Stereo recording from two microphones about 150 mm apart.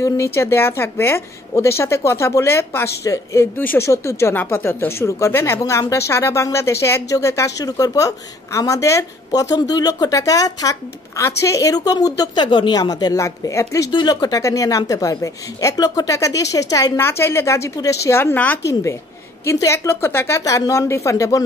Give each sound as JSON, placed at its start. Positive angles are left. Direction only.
{"t": 0.0, "sound": "a woman's voice", "side_deg": 20}